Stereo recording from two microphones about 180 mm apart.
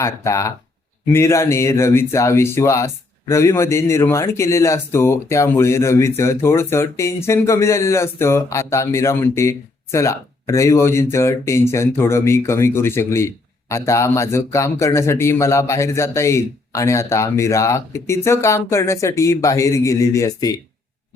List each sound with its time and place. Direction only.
0.0 s speech: 15° left (ahead or behind)